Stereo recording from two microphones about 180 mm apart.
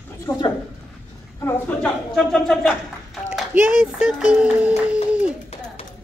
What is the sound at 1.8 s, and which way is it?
Speech, centre (ahead or behind).